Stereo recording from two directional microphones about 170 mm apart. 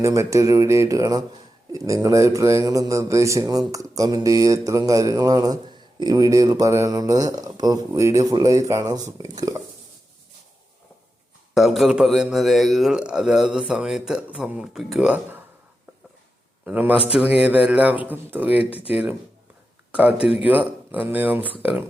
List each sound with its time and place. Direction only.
0.0 s a man's voice: 15° right (ahead or behind)
11.5 s a man's voice: centre (ahead or behind)
16.6 s speech: 10° right (ahead or behind)